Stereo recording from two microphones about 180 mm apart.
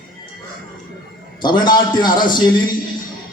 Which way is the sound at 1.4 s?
25° left (ahead or behind).